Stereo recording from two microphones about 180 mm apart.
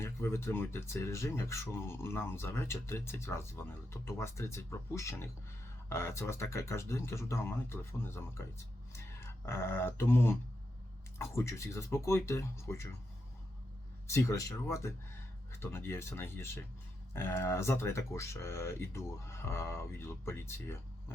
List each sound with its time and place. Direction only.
0.0 s speech: 15° left (ahead or behind)
14.1 s speech: 15° left (ahead or behind)